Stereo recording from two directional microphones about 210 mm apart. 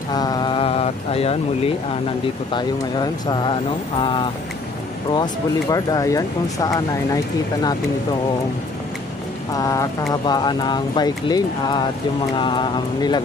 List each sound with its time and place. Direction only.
0.1 s speech: 20° left (ahead or behind)
9.5 s speech: 15° left (ahead or behind)